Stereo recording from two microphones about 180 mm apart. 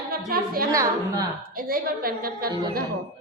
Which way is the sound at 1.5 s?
55° right (ahead or behind).